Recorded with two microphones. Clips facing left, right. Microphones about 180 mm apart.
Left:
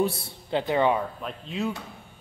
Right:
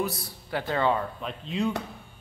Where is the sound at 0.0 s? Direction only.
25° left (ahead or behind).